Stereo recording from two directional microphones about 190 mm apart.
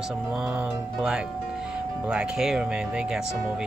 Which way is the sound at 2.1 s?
5° right (ahead or behind).